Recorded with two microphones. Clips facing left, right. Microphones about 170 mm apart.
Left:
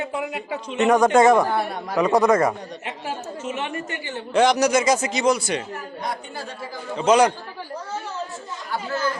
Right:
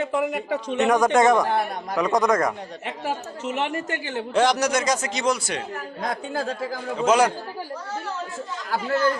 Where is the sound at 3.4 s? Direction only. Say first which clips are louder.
Right 3 dB; 85° right.